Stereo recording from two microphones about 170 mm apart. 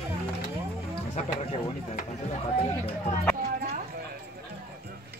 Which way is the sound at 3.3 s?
65° right (ahead or behind).